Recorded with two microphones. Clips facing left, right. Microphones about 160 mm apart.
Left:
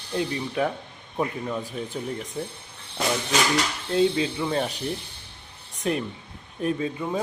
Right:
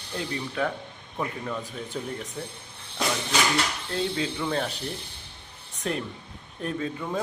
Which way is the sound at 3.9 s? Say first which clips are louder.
Left 8 dB; 10° left (ahead or behind).